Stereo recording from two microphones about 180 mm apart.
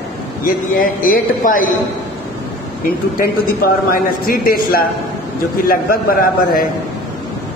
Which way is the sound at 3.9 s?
55° left (ahead or behind).